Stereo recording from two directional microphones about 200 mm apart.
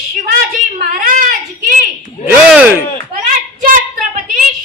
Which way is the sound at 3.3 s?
40° right (ahead or behind).